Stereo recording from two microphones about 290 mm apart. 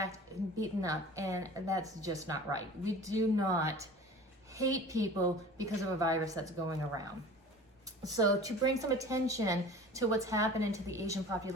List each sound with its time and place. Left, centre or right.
0.6 s a woman's voice: centre
8.0 s a woman's voice: centre